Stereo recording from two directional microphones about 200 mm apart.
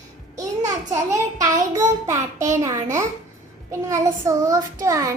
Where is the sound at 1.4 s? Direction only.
15° right (ahead or behind).